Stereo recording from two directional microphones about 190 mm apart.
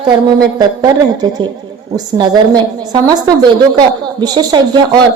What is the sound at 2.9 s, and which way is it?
A woman's voice, 20° right (ahead or behind).